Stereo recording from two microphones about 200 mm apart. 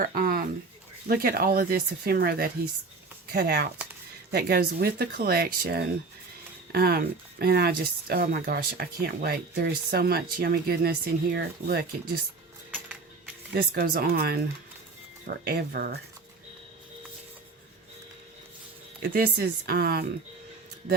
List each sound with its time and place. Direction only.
0.0 s a sound: 45° right (ahead or behind)
1.0 s speech: 50° right (ahead or behind)
12.7 s music: 5° right (ahead or behind)
13.5 s speech: 50° right (ahead or behind)
19.1 s speech: 50° right (ahead or behind)